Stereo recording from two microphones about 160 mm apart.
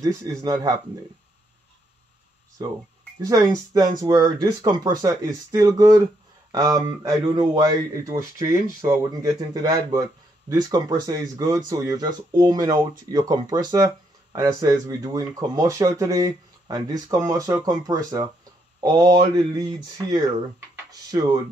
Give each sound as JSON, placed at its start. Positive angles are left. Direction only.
{"t": 0.0, "sound": "speech", "side_deg": -20}
{"t": 2.6, "sound": "speech", "side_deg": -25}